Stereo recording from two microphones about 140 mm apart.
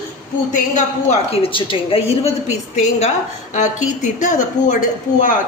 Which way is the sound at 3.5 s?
60° left (ahead or behind).